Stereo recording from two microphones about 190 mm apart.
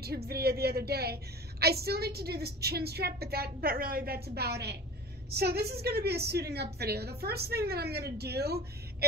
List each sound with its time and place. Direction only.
0.0 s a woman's voice: 55° right (ahead or behind)